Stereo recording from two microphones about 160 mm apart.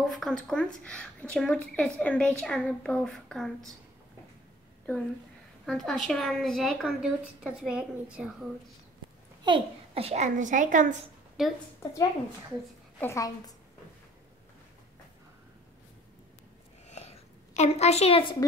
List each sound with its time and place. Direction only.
0.0 s a woman's voice: centre (ahead or behind)
5.7 s a woman's voice: 5° left (ahead or behind)
9.4 s a child's voice: 35° right (ahead or behind); by 11.0 s 55° right (ahead or behind)
11.4 s a woman's voice: centre (ahead or behind)
13.0 s a woman's voice: 20° left (ahead or behind)
16.8 s a sound: 45° left (ahead or behind)